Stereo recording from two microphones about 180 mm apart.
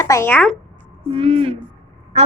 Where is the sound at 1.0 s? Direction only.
30° right (ahead or behind).